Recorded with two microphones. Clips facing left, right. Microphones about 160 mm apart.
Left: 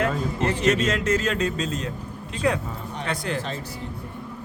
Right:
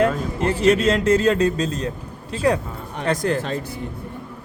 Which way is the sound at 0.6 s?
30° right (ahead or behind).